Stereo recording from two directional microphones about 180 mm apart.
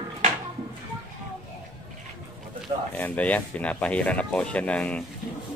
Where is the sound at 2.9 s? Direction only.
10° left (ahead or behind).